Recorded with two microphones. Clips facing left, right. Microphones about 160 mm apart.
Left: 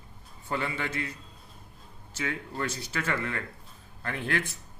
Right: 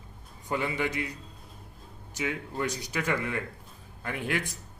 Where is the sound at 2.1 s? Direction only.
15° right (ahead or behind).